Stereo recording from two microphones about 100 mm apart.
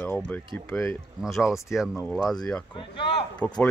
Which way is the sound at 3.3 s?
10° left (ahead or behind).